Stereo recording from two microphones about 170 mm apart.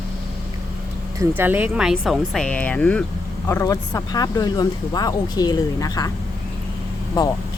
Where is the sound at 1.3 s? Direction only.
10° right (ahead or behind); by 6.1 s 20° left (ahead or behind).